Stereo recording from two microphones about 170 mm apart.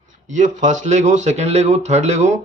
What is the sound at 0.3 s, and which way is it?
A man's voice, 45° right (ahead or behind).